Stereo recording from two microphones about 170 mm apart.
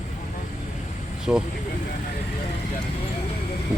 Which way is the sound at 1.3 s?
10° right (ahead or behind).